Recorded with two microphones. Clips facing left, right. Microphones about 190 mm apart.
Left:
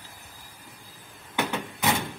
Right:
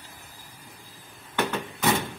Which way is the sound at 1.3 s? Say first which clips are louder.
Right 1 dB; 10° left (ahead or behind).